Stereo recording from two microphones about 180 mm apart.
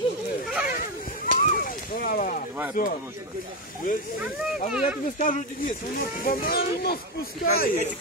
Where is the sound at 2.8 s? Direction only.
55° left (ahead or behind).